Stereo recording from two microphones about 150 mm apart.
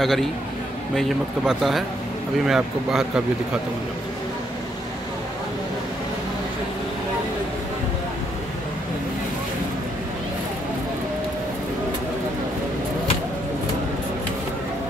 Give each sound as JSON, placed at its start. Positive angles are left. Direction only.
{"t": 0.0, "sound": "speech", "side_deg": 0}